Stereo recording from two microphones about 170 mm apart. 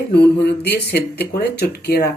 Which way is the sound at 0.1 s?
75° left (ahead or behind).